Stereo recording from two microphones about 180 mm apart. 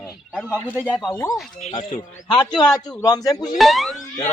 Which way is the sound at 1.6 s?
40° left (ahead or behind).